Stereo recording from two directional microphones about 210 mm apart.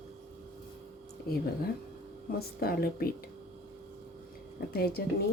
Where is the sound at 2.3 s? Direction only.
45° left (ahead or behind).